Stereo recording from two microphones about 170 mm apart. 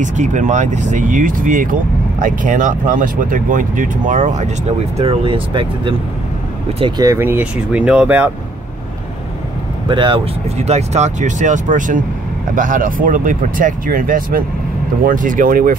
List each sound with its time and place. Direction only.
0.0 s speech: 45° right (ahead or behind)
4.9 s speech: 30° right (ahead or behind)
7.0 s speech: 15° right (ahead or behind)
9.8 s speech: 30° right (ahead or behind)
10.7 s speech: 40° right (ahead or behind)